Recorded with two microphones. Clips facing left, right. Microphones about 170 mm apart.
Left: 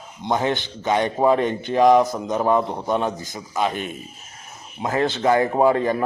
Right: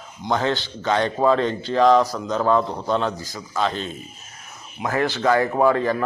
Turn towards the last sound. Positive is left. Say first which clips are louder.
# left 1 dB
turn(degrees=25)  # may be behind; listen again after turning